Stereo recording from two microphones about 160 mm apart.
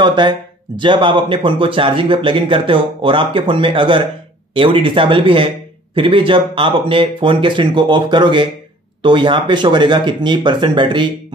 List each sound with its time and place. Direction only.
0.0 s speech: 30° right (ahead or behind)